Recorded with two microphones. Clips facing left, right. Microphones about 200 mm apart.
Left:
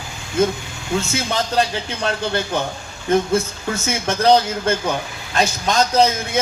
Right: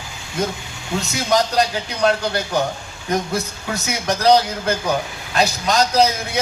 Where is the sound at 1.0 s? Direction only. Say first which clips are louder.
Right 7 dB; 40° right (ahead or behind).